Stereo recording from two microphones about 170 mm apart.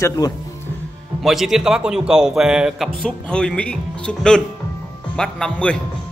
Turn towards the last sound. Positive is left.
turn(degrees=5)  # may be behind; listen again after turning